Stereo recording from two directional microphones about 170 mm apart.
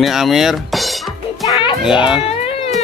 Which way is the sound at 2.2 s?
35° left (ahead or behind).